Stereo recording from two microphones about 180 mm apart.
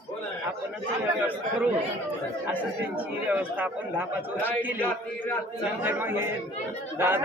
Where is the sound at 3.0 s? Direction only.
10° right (ahead or behind).